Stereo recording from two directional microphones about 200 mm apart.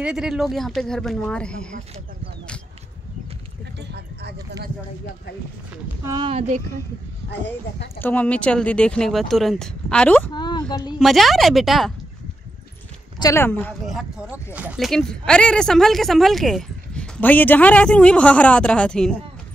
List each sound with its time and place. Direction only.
0.0 s speech: 5° right (ahead or behind)
3.9 s a sound: 55° right (ahead or behind)
6.0 s speech: 25° right (ahead or behind)
7.2 s speech: 60° left (ahead or behind)
8.0 s speech: 10° left (ahead or behind)
10.3 s a sound: 20° left (ahead or behind)
10.7 s speech: 20° left (ahead or behind)
11.0 s speech: centre (ahead or behind)
13.2 s speech: 15° left (ahead or behind)